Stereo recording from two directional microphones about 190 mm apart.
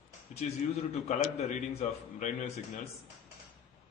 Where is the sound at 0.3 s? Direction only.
35° left (ahead or behind).